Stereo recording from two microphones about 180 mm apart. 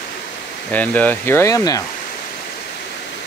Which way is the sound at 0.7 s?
10° left (ahead or behind).